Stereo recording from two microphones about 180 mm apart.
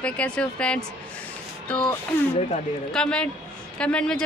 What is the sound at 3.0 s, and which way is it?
Speech, 5° left (ahead or behind).